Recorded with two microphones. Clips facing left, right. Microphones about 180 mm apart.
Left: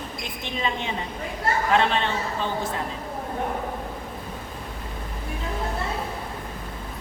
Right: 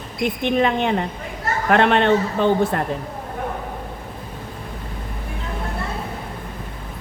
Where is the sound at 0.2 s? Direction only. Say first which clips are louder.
Right 13 dB; 60° right (ahead or behind).